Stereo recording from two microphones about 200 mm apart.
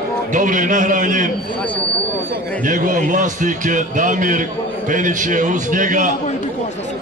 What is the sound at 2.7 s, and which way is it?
A man's voice, 40° right (ahead or behind).